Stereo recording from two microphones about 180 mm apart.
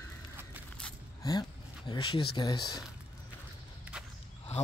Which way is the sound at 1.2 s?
20° left (ahead or behind).